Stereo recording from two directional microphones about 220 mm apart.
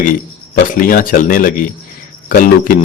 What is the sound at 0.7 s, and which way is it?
A man's voice, 40° left (ahead or behind).